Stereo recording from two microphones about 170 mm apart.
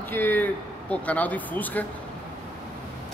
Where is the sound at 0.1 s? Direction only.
10° left (ahead or behind).